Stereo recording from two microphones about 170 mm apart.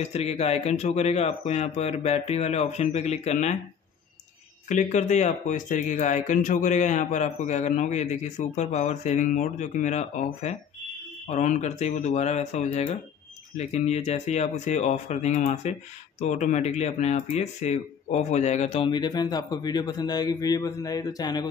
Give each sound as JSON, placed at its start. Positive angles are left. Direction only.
{"t": 0.0, "sound": "speech", "side_deg": 40}
{"t": 4.6, "sound": "speech", "side_deg": 45}